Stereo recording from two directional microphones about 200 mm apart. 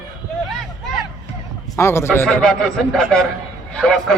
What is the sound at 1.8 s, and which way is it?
Speech, 15° left (ahead or behind).